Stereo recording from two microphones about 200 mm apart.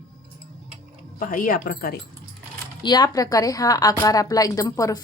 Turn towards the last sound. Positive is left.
turn(degrees=15)  # may be behind; listen again after turning